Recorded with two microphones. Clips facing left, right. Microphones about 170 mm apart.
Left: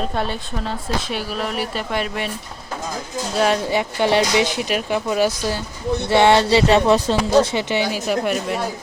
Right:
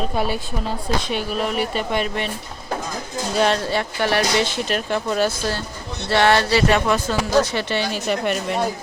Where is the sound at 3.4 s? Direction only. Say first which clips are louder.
Left 1 dB; 10° left (ahead or behind).